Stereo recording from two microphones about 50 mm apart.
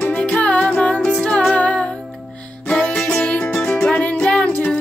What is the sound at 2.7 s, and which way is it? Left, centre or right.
Music, left.